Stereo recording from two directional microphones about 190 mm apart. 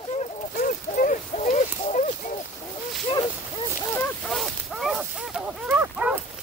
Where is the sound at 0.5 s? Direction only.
45° left (ahead or behind).